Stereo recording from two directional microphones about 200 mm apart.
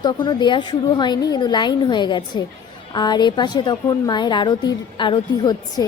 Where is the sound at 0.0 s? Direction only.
20° left (ahead or behind).